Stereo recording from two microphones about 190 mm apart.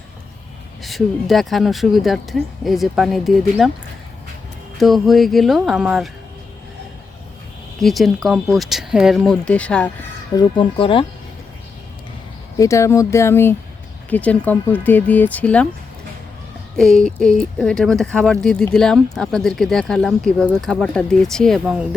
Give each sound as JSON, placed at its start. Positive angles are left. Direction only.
{"t": 0.8, "sound": "speech", "side_deg": 0}
{"t": 4.8, "sound": "speech", "side_deg": 0}
{"t": 7.8, "sound": "speech", "side_deg": 0}
{"t": 10.3, "sound": "speech", "side_deg": 25}
{"t": 12.5, "sound": "speech", "side_deg": 15}
{"t": 16.7, "sound": "speech", "side_deg": 5}